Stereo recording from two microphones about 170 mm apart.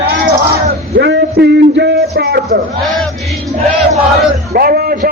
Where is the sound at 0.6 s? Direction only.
70° right (ahead or behind).